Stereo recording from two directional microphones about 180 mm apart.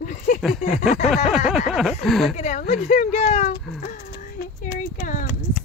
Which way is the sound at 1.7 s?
Centre (ahead or behind).